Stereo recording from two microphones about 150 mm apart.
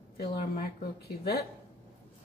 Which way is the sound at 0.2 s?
90° left.